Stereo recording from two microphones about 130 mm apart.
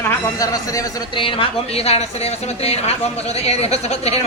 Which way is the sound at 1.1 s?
40° left (ahead or behind).